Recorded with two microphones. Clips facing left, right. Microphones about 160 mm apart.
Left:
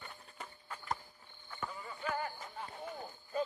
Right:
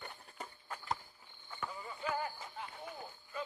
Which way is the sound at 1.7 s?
10° right (ahead or behind).